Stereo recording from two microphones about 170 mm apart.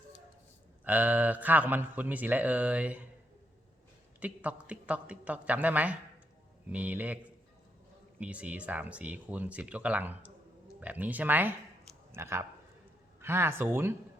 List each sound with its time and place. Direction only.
0.9 s speech: 10° right (ahead or behind)
4.2 s speech: 10° right (ahead or behind)
8.2 s speech: 5° right (ahead or behind)